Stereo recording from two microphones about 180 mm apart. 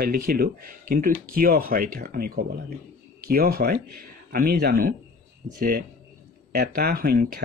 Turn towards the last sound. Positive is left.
turn(degrees=-60)  # may be behind; listen again after turning